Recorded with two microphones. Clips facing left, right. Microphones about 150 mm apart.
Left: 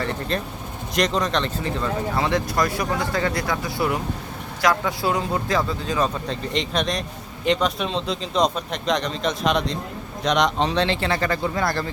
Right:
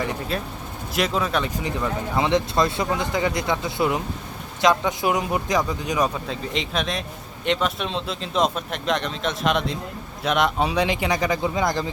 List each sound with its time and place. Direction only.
0.0 s speech: 10° right (ahead or behind)
6.2 s speech: 5° right (ahead or behind)